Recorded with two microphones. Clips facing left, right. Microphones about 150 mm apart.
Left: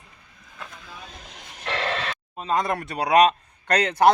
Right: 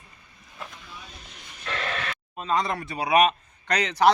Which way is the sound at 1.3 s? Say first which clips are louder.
Left 4 dB; 90° left.